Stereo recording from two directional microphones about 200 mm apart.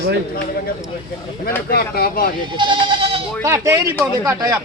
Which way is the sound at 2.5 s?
25° right (ahead or behind).